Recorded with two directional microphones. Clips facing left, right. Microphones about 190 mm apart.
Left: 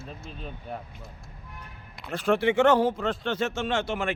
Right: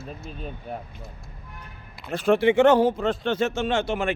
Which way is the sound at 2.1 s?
20° right (ahead or behind).